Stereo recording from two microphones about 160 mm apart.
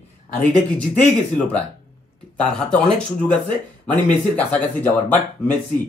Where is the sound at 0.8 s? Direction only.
5° left (ahead or behind).